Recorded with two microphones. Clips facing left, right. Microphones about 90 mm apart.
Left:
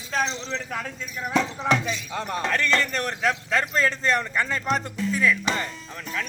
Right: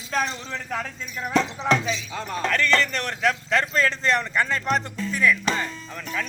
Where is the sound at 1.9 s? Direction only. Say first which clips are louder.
Right 1 dB; 55° left (ahead or behind).